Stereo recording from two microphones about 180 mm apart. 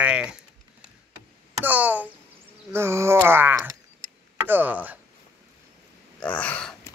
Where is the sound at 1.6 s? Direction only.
10° right (ahead or behind).